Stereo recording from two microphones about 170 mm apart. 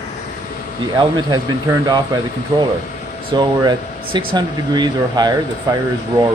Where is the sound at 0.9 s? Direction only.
25° right (ahead or behind).